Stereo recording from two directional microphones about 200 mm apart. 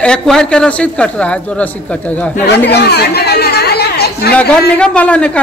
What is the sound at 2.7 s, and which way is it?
Chatter, 55° left (ahead or behind).